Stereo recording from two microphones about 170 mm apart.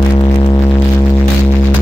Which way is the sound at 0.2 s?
25° left (ahead or behind).